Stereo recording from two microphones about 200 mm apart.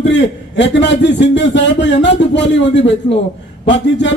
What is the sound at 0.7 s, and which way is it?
A man's voice, 60° left (ahead or behind).